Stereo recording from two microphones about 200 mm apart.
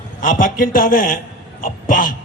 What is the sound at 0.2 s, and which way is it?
A man's voice, 40° left (ahead or behind).